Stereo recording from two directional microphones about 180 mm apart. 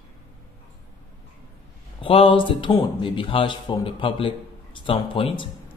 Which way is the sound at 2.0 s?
30° left (ahead or behind).